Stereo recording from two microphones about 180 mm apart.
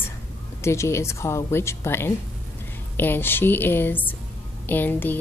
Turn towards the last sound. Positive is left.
turn(degrees=10)  # may be behind; listen again after turning